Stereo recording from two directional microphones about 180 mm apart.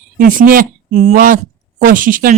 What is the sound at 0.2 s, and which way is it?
A woman's voice, 50° right (ahead or behind).